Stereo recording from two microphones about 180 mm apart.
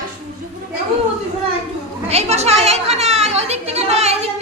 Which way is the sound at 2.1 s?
35° right (ahead or behind).